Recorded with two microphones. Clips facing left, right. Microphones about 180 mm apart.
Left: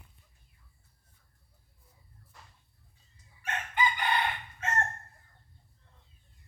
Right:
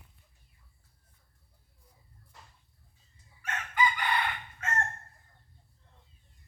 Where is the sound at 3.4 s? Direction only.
30° left (ahead or behind).